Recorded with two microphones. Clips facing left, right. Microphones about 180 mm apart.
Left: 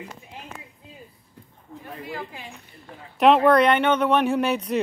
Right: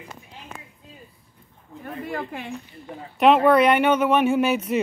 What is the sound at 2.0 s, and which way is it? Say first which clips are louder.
Speech: right 5 dB; 55° right (ahead or behind).